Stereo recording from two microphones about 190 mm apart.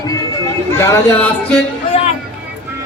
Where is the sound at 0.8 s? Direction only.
15° left (ahead or behind).